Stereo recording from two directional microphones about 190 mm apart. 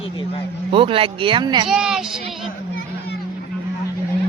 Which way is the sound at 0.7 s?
30° right (ahead or behind).